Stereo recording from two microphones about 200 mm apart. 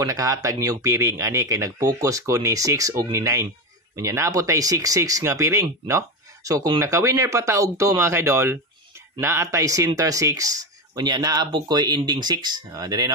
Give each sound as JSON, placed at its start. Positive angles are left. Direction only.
{"t": 0.0, "sound": "a man's voice", "side_deg": -15}